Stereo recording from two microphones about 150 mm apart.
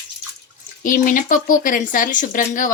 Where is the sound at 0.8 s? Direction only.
65° left (ahead or behind).